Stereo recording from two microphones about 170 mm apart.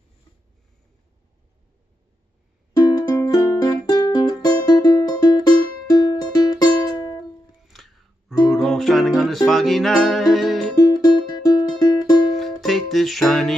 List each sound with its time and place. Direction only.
2.8 s music: 20° left (ahead or behind)
7.6 s music: centre (ahead or behind)
10.9 s music: 25° left (ahead or behind)
12.4 s music: centre (ahead or behind)